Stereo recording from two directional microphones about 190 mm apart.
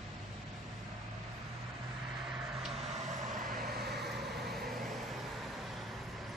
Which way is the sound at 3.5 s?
50° right (ahead or behind).